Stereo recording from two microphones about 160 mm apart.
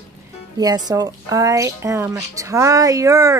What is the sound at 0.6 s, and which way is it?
Speech, 25° right (ahead or behind).